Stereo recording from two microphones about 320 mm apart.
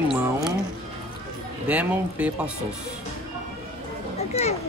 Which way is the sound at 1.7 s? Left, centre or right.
Centre.